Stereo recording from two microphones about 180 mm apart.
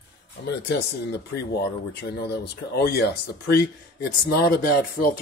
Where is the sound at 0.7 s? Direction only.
65° left (ahead or behind).